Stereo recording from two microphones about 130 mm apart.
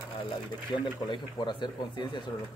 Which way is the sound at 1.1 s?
35° left (ahead or behind).